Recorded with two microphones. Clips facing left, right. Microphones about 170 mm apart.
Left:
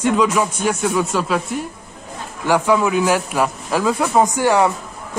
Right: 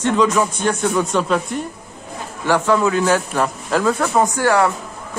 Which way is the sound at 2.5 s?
10° left (ahead or behind).